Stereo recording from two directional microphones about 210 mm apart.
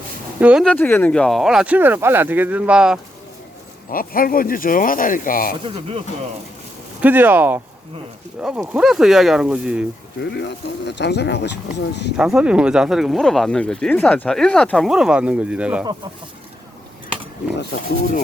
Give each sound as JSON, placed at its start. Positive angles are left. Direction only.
{"t": 0.3, "sound": "speech", "side_deg": -5}
{"t": 3.9, "sound": "speech", "side_deg": 45}
{"t": 5.6, "sound": "speech", "side_deg": -25}
{"t": 7.0, "sound": "speech", "side_deg": -10}
{"t": 10.3, "sound": "speech", "side_deg": 55}
{"t": 12.1, "sound": "speech", "side_deg": -5}